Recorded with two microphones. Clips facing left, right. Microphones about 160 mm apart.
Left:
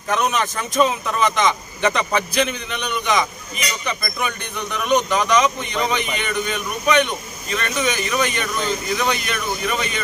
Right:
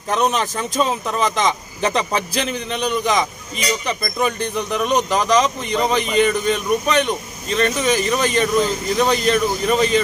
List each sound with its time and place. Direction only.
0.1 s a man's voice: 30° right (ahead or behind)